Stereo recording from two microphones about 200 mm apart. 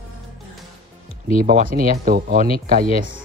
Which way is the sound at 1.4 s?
45° right (ahead or behind).